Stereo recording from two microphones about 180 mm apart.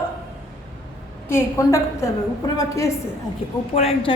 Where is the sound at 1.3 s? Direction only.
15° left (ahead or behind).